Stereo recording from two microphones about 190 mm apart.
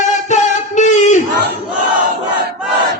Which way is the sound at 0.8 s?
40° left (ahead or behind).